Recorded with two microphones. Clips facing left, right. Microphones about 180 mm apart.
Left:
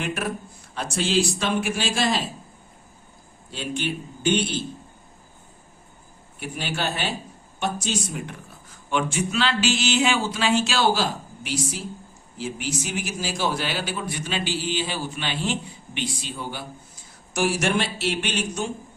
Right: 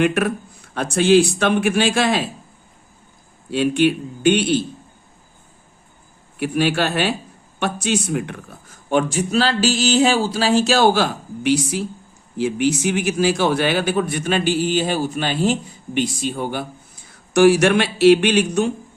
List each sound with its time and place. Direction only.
0.0 s speech: 65° right (ahead or behind)
3.5 s speech: 65° right (ahead or behind)
6.4 s speech: 65° right (ahead or behind)
8.9 s a sound: 40° right (ahead or behind); by 11.8 s 65° right (ahead or behind)
12.4 s speech: 65° right (ahead or behind)
17.3 s speech: 70° right (ahead or behind)